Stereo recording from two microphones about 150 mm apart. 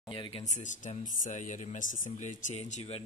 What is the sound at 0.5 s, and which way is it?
Speech, 55° left (ahead or behind).